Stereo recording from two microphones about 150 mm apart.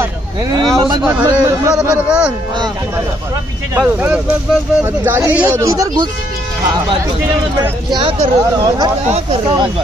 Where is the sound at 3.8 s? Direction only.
10° right (ahead or behind).